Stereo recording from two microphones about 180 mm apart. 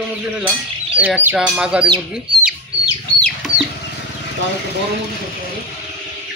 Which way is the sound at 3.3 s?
Centre (ahead or behind).